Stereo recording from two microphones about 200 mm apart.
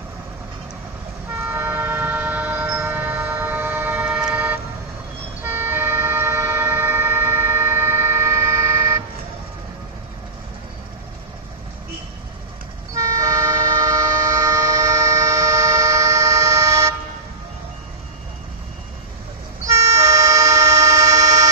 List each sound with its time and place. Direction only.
1.4 s siren: 10° right (ahead or behind)
5.4 s vehicle: 10° right (ahead or behind)
12.9 s train: 15° right (ahead or behind)
19.6 s vehicle: 15° right (ahead or behind)